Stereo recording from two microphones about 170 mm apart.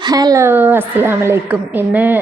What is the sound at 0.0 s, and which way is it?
A woman's voice, 20° right (ahead or behind).